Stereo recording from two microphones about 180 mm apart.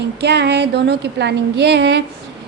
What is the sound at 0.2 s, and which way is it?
A woman's voice, 70° right (ahead or behind).